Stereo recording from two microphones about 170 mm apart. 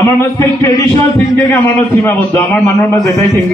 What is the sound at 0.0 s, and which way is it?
A man's voice, 15° left (ahead or behind).